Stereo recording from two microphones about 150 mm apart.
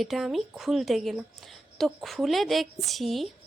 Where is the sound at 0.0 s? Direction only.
Centre (ahead or behind).